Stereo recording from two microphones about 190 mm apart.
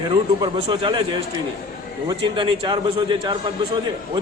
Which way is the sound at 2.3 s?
25° right (ahead or behind).